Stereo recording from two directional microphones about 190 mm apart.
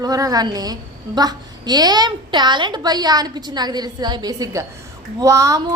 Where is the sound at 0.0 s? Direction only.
20° right (ahead or behind).